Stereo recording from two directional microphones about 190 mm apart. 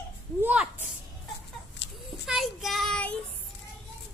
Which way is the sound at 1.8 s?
70° left (ahead or behind).